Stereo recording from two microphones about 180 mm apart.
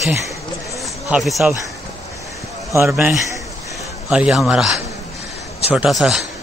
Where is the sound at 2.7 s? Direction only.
15° right (ahead or behind).